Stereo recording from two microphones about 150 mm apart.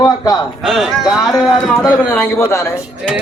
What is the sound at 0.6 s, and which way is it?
Speech, centre (ahead or behind).